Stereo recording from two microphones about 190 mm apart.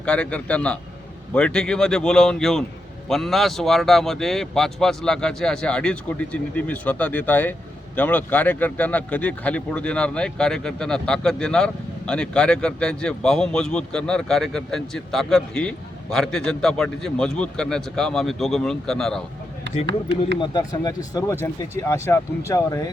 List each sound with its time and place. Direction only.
0.0 s speech: 5° left (ahead or behind)
19.6 s speech: 65° right (ahead or behind)
20.4 s speech: 20° left (ahead or behind)